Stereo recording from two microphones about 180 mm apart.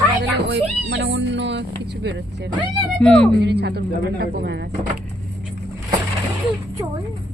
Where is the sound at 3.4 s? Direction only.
65° right (ahead or behind).